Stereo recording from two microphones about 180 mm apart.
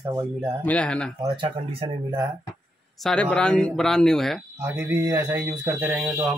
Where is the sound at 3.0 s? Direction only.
5° left (ahead or behind).